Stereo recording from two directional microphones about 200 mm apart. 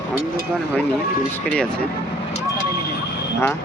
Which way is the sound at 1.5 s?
5° left (ahead or behind).